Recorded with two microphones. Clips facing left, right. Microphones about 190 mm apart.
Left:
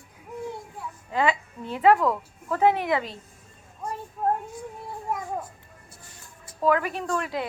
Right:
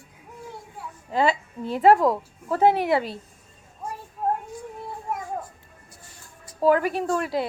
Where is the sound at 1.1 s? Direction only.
35° right (ahead or behind).